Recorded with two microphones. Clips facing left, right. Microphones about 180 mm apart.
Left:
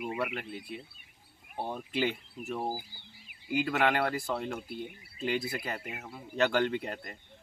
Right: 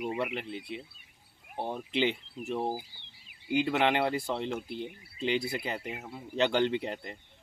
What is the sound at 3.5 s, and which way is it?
Speech, 25° right (ahead or behind).